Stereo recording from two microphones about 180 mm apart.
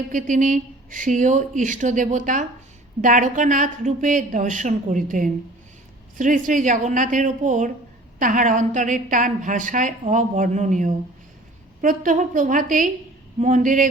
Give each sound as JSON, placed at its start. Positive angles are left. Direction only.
{"t": 0.1, "sound": "a woman's voice", "side_deg": -45}